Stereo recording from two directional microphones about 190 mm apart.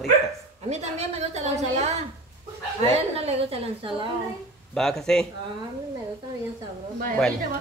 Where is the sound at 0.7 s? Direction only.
35° right (ahead or behind).